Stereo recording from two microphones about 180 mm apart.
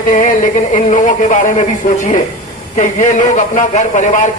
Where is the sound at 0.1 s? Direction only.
45° left (ahead or behind).